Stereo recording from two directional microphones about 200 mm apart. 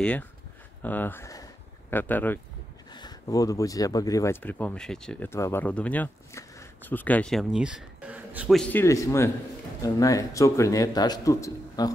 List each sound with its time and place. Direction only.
0.8 s speech: 10° left (ahead or behind)
2.9 s speech: 20° left (ahead or behind)